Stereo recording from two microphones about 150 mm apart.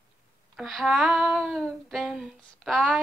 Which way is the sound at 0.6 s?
Centre (ahead or behind).